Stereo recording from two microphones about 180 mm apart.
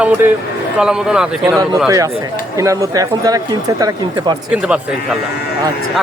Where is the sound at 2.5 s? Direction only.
20° right (ahead or behind).